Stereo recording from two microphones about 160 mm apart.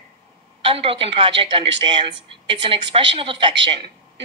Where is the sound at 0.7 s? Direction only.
35° right (ahead or behind).